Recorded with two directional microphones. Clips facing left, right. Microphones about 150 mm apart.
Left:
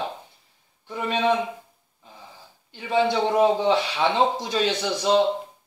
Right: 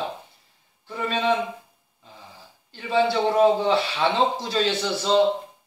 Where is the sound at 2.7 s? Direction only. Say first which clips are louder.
Even; 15° left (ahead or behind).